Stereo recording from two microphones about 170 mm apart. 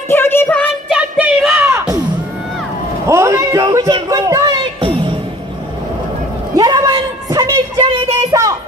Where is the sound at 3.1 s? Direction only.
15° right (ahead or behind); by 5.2 s 30° right (ahead or behind).